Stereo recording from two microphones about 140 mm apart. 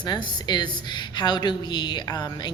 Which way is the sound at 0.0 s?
30° left (ahead or behind).